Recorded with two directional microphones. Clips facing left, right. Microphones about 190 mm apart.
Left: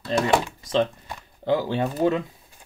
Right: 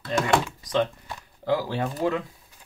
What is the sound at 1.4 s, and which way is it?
Speech, 25° left (ahead or behind).